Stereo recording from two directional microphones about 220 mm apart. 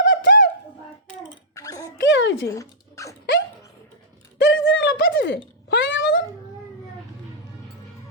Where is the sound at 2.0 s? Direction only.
60° left (ahead or behind).